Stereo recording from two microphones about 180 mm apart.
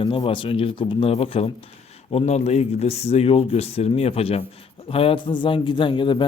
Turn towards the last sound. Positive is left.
turn(degrees=25)  # may be behind; listen again after turning